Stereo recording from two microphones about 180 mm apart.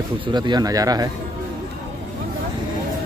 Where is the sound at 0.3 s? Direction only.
25° right (ahead or behind).